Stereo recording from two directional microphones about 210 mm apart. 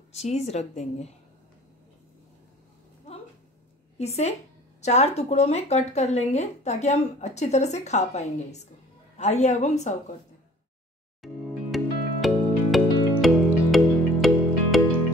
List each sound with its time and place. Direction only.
0.1 s speech: 30° left (ahead or behind)
4.0 s speech: 30° left (ahead or behind)
11.2 s music: centre (ahead or behind)